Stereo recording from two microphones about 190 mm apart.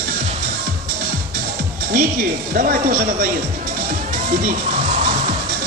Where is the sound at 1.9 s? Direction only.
50° right (ahead or behind).